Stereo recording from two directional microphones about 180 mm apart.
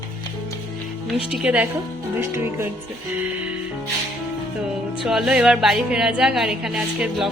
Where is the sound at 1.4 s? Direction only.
10° right (ahead or behind).